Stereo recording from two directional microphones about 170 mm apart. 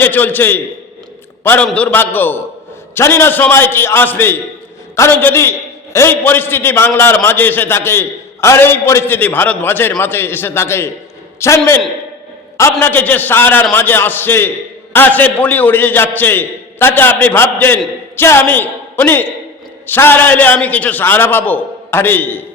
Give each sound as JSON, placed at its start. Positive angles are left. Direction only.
{"t": 0.0, "sound": "a man's voice", "side_deg": 10}
{"t": 12.8, "sound": "a man's voice", "side_deg": 10}